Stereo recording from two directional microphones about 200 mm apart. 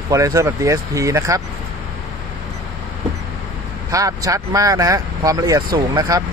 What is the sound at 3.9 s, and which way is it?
Speech, 15° right (ahead or behind).